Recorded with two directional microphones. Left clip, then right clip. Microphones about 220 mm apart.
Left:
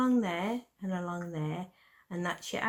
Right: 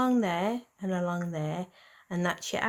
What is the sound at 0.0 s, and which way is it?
Speech, 35° right (ahead or behind).